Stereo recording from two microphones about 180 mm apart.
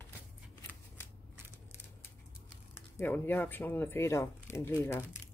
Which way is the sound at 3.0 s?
10° left (ahead or behind).